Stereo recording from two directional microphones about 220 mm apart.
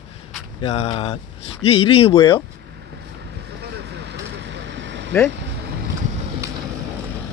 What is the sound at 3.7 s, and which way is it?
Vehicle, 50° right (ahead or behind).